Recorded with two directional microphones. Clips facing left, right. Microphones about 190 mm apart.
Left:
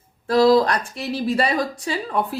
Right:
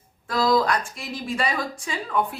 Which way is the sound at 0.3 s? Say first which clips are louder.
Left 6 dB; 35° left (ahead or behind).